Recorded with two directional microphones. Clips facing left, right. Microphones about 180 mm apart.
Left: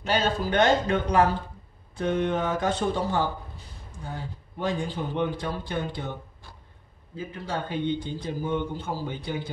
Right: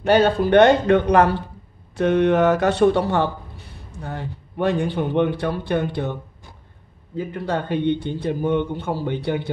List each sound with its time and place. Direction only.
0.0 s a man's voice: 60° right (ahead or behind)
7.2 s a man's voice: 60° right (ahead or behind)